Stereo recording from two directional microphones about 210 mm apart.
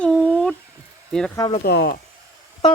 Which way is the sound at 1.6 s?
50° left (ahead or behind).